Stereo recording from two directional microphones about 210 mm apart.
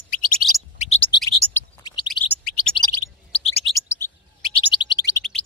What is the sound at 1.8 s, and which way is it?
Bird, 20° left (ahead or behind).